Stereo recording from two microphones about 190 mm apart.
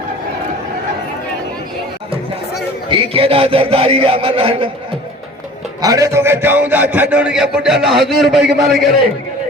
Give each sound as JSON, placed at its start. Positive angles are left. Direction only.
{"t": 2.9, "sound": "a man's voice", "side_deg": -30}
{"t": 5.8, "sound": "a man's voice", "side_deg": -20}